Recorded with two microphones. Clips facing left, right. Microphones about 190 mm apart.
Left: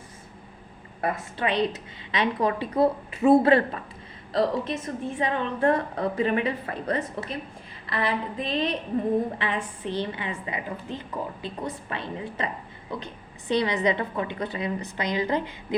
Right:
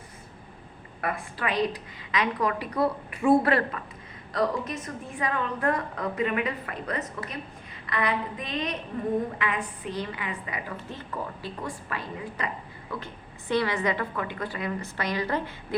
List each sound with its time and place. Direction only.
1.0 s a woman's voice: 25° left (ahead or behind)